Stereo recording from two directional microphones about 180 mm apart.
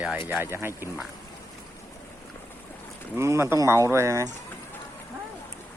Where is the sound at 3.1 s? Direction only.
15° right (ahead or behind).